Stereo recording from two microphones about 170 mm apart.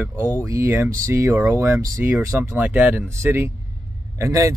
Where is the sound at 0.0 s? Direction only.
15° right (ahead or behind).